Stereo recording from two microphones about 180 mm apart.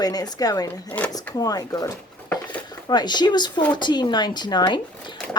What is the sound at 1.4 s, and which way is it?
Speech, 20° left (ahead or behind).